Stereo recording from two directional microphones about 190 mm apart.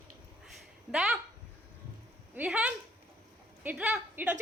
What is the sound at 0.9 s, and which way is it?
Speech, 5° right (ahead or behind).